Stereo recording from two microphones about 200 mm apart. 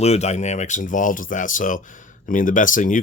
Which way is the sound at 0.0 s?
35° left (ahead or behind).